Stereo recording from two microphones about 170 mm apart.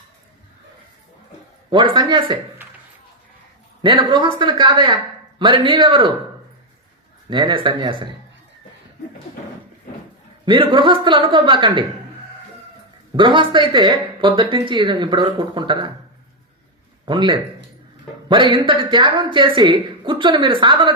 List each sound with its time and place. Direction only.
1.7 s speech: 25° right (ahead or behind)
3.8 s speech: 30° right (ahead or behind)
7.3 s speech: 30° right (ahead or behind)
10.4 s speech: 30° right (ahead or behind)
13.1 s speech: 30° right (ahead or behind)
17.1 s speech: 30° right (ahead or behind)